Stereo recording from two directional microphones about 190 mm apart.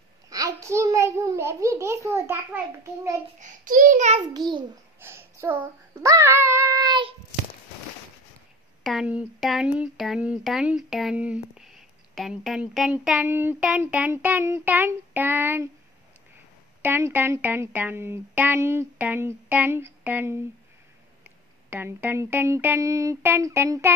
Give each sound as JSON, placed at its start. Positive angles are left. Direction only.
{"t": 0.3, "sound": "a sound", "side_deg": -15}
{"t": 3.3, "sound": "a child's voice", "side_deg": -45}
{"t": 4.5, "sound": "a child's voice", "side_deg": -25}
{"t": 5.0, "sound": "child singing", "side_deg": -10}
{"t": 8.8, "sound": "speech", "side_deg": -5}
{"t": 16.8, "sound": "speech", "side_deg": -10}
{"t": 21.6, "sound": "speech", "side_deg": -10}